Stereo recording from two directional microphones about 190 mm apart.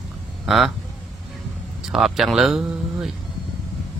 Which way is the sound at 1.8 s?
Centre (ahead or behind).